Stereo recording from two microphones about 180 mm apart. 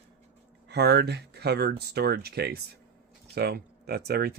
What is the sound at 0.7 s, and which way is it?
Speech, 65° right (ahead or behind).